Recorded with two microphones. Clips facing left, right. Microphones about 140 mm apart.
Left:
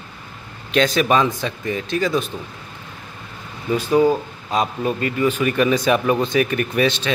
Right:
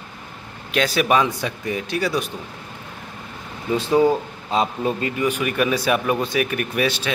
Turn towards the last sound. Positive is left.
turn(degrees=-10)  # may be behind; listen again after turning